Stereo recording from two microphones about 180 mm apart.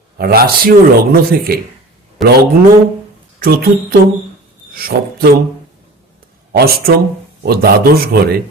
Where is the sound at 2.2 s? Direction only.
Centre (ahead or behind).